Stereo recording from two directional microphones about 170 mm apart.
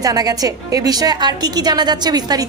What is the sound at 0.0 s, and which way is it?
A woman's voice, 20° right (ahead or behind).